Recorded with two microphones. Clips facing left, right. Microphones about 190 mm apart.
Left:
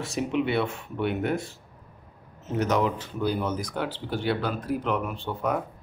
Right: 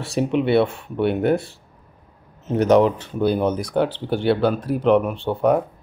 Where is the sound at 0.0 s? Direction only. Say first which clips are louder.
Right 6 dB; 30° right (ahead or behind).